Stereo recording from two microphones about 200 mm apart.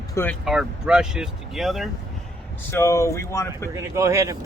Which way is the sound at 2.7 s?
15° left (ahead or behind).